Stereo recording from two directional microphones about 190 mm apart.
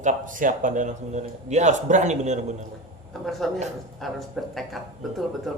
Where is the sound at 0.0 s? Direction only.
45° right (ahead or behind).